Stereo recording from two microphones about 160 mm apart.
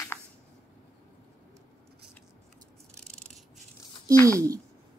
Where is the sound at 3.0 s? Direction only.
5° left (ahead or behind).